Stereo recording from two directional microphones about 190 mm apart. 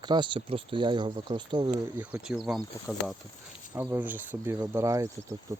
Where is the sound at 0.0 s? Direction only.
25° right (ahead or behind).